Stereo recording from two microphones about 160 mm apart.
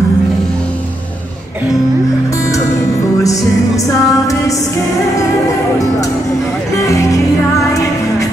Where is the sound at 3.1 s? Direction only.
20° left (ahead or behind).